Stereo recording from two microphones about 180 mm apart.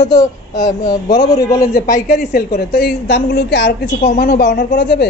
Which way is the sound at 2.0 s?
55° left (ahead or behind).